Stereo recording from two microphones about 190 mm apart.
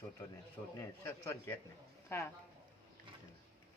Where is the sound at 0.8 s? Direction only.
10° left (ahead or behind).